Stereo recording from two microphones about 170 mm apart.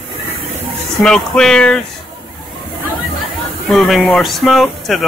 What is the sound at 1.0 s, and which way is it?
Speech, 5° left (ahead or behind).